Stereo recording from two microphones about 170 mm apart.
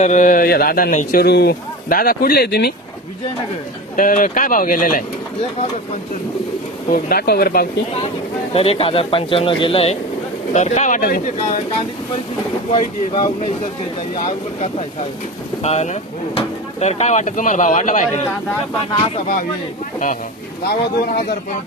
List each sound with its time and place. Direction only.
0.0 s a man's voice: 45° left (ahead or behind); by 2.7 s 70° left (ahead or behind)
3.9 s speech: 50° left (ahead or behind)
6.8 s a man's voice: 60° left (ahead or behind)
8.5 s speech: 35° left (ahead or behind); by 11.2 s 55° left (ahead or behind)
12.7 s speech: 30° left (ahead or behind)
18.9 s speech: 35° left (ahead or behind)
20.7 s a man's voice: 60° left (ahead or behind)